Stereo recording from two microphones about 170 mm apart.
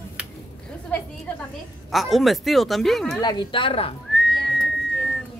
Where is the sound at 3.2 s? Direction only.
25° left (ahead or behind).